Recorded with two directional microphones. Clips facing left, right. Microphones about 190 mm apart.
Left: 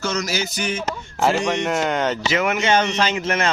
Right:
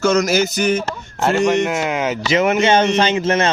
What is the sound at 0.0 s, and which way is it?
Speech, 50° right (ahead or behind).